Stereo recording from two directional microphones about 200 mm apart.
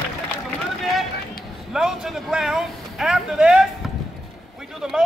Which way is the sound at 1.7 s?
Centre (ahead or behind).